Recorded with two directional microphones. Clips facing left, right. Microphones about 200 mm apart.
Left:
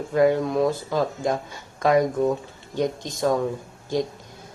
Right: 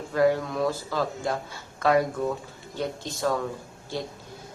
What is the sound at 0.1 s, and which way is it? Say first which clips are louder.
A man's voice: left 3 dB; 20° left (ahead or behind).